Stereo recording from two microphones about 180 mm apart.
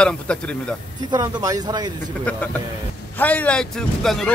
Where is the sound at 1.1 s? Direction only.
20° right (ahead or behind).